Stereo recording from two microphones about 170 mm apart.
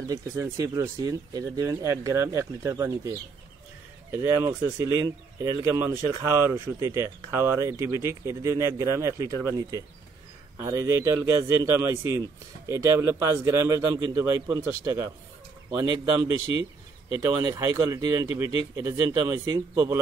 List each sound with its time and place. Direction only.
0.1 s speech: 20° right (ahead or behind)
17.6 s speech: 15° right (ahead or behind)